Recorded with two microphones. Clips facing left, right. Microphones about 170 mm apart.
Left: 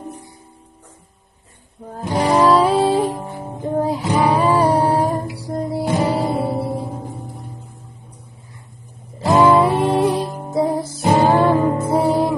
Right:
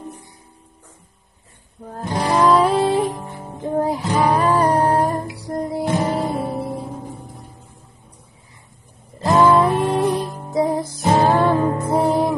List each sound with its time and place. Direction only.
1.9 s music: 5° left (ahead or behind)
9.2 s music: 10° left (ahead or behind)
10.5 s music: centre (ahead or behind)
10.9 s music: 15° left (ahead or behind)
11.9 s music: 5° left (ahead or behind)